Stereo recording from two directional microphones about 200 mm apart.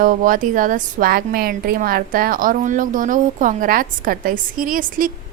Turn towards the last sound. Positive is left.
turn(degrees=-45)  # may be behind; listen again after turning